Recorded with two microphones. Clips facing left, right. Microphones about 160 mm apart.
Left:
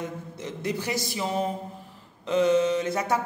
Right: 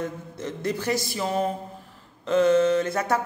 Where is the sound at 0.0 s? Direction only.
15° left (ahead or behind).